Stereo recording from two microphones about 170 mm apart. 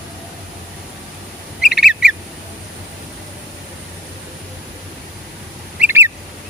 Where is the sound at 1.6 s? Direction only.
5° right (ahead or behind).